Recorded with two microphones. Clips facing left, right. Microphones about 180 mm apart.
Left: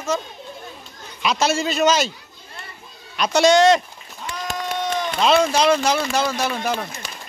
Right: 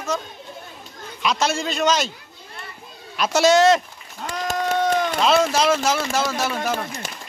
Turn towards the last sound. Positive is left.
turn(degrees=0)  # may be behind; listen again after turning